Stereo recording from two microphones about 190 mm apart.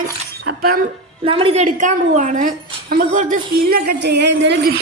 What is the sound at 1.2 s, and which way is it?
A woman's voice, 30° right (ahead or behind).